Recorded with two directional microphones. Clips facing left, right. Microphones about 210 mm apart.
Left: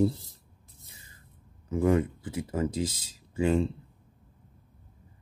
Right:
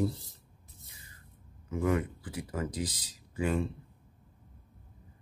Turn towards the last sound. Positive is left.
turn(degrees=25)  # may be behind; listen again after turning